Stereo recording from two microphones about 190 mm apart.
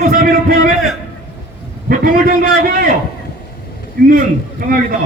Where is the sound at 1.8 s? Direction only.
50° right (ahead or behind).